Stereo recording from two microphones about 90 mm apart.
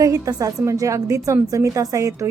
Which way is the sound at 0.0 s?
40° right (ahead or behind).